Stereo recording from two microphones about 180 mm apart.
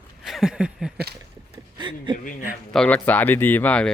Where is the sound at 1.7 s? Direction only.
25° right (ahead or behind).